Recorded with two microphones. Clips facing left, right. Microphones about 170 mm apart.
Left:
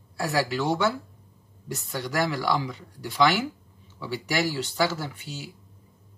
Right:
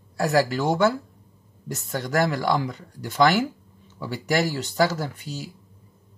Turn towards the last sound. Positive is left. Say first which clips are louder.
# right 4 dB
turn(degrees=-40)  # may be behind; listen again after turning